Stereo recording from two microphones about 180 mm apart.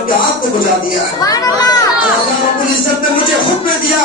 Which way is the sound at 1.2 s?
20° left (ahead or behind).